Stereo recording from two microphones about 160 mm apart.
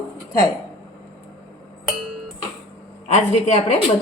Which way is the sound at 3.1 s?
45° left (ahead or behind).